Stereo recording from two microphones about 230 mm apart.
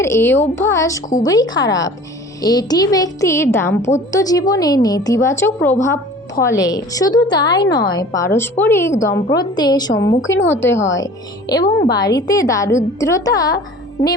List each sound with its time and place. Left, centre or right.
0.0 s a woman's voice: centre
10.3 s a woman's voice: left
10.9 s a woman's voice: centre